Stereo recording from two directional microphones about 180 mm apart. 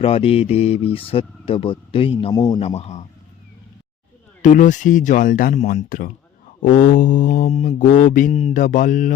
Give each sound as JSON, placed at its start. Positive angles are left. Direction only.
{"t": 0.0, "sound": "speech", "side_deg": 35}
{"t": 2.6, "sound": "speech", "side_deg": 35}
{"t": 4.4, "sound": "mantra", "side_deg": 45}